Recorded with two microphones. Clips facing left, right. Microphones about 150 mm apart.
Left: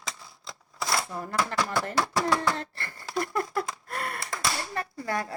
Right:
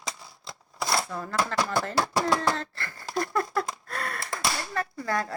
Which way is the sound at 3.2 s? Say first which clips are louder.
Right 1 dB; 20° left (ahead or behind).